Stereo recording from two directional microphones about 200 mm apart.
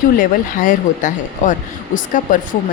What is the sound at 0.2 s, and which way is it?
Speech, 45° left (ahead or behind).